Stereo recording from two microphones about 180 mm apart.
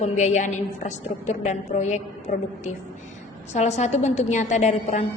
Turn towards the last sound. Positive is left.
turn(degrees=40)  # may be behind; listen again after turning